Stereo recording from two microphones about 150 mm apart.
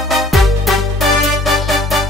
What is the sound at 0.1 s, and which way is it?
Music, centre (ahead or behind).